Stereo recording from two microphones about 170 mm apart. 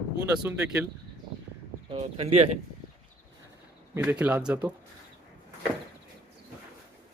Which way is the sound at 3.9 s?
5° right (ahead or behind).